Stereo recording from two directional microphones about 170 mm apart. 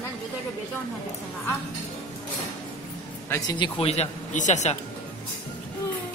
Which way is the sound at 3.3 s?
20° left (ahead or behind).